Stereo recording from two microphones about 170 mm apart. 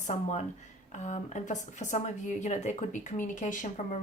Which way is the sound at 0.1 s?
40° left (ahead or behind).